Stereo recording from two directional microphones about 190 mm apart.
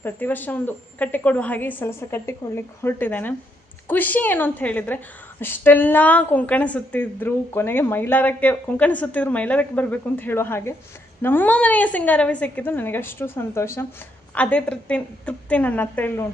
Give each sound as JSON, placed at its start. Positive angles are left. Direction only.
{"t": 0.0, "sound": "a woman's voice", "side_deg": 10}